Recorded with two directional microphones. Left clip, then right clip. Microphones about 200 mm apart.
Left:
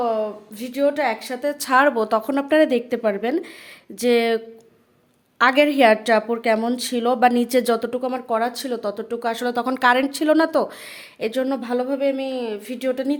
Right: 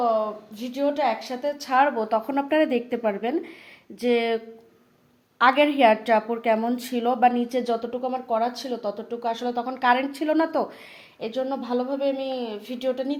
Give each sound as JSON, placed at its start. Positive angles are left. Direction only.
{"t": 0.0, "sound": "a woman's voice", "side_deg": 40}
{"t": 5.4, "sound": "a woman's voice", "side_deg": 35}
{"t": 11.2, "sound": "a woman's voice", "side_deg": 45}